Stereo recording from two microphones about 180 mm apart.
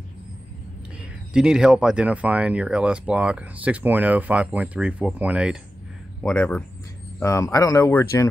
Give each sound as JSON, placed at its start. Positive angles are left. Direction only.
{"t": 1.3, "sound": "speech", "side_deg": -5}
{"t": 6.2, "sound": "speech", "side_deg": 5}